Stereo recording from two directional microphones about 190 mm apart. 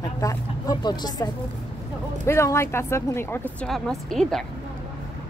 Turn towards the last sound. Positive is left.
turn(degrees=0)  # may be behind; listen again after turning